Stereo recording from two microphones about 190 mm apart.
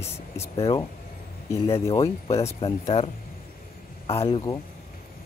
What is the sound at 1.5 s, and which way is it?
Speech, 15° left (ahead or behind).